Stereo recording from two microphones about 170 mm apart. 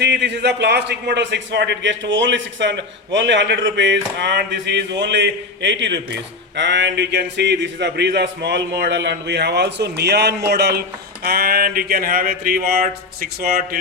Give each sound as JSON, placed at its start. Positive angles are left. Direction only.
{"t": 0.0, "sound": "a man's voice", "side_deg": -80}